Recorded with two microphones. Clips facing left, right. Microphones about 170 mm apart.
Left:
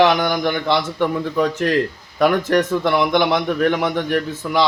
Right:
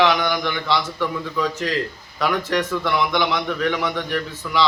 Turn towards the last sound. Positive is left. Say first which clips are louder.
# left 4 dB
turn(degrees=45)  # may be behind; listen again after turning